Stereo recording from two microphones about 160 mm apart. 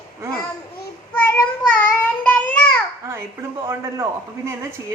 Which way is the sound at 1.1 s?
15° left (ahead or behind).